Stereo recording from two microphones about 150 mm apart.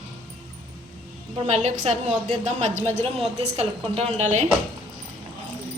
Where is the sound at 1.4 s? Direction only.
50° right (ahead or behind).